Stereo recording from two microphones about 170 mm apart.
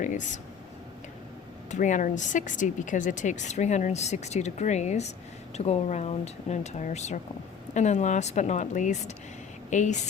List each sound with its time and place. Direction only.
0.0 s speech: 45° left (ahead or behind)
1.7 s a woman's voice: 50° left (ahead or behind)